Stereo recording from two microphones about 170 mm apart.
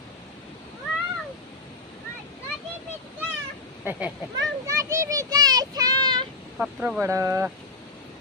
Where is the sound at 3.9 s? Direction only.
10° right (ahead or behind).